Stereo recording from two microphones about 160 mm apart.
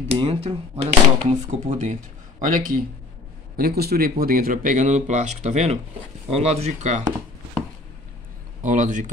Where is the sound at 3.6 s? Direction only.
75° right (ahead or behind); by 7.1 s 50° right (ahead or behind).